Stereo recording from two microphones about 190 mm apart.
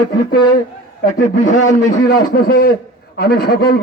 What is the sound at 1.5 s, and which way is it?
A man's voice, 40° left (ahead or behind).